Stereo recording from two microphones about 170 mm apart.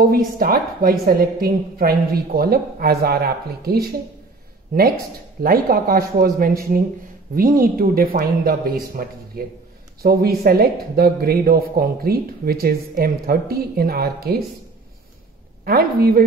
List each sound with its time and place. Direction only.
0.1 s speech: 60° right (ahead or behind)
5.4 s speech: 60° right (ahead or behind)
15.6 s speech: 60° right (ahead or behind)